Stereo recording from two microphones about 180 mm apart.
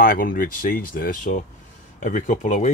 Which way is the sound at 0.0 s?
50° left (ahead or behind).